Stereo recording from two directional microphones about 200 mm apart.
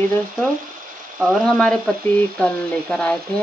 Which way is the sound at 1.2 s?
Centre (ahead or behind).